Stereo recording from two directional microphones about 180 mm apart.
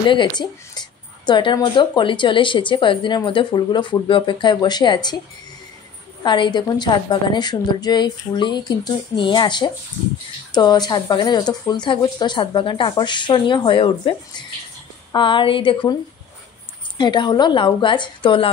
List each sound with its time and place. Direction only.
0.0 s speech: 25° left (ahead or behind)
6.2 s speech: 25° left (ahead or behind)
17.0 s speech: 25° left (ahead or behind)